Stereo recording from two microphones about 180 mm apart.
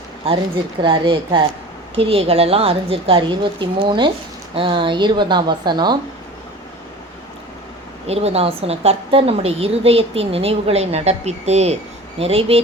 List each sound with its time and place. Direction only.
0.8 s a woman's voice: 25° right (ahead or behind)
8.0 s a woman's voice: 35° right (ahead or behind)